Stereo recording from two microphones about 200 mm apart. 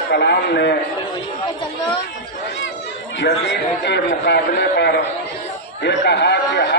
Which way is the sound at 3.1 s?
60° left (ahead or behind).